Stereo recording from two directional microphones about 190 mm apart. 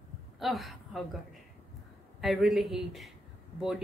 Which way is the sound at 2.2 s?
Centre (ahead or behind).